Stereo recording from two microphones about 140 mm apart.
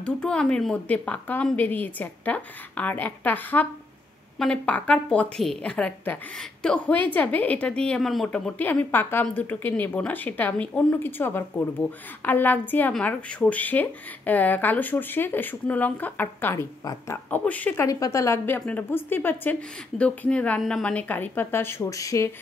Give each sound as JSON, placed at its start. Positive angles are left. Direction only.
{"t": 0.0, "sound": "a woman's voice", "side_deg": 5}
{"t": 17.8, "sound": "a woman's voice", "side_deg": 25}